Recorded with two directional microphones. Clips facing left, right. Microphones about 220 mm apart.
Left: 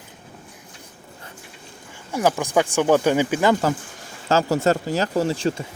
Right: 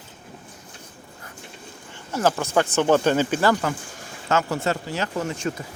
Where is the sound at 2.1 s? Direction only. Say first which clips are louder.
Left 1 dB; 10° left (ahead or behind).